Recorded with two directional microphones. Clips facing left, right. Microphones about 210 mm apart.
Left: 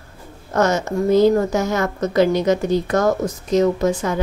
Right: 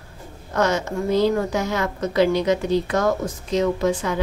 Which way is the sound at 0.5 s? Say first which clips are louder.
Left 3 dB; 45° left (ahead or behind).